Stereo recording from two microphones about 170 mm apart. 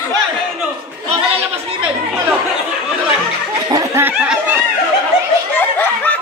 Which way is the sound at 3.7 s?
15° right (ahead or behind).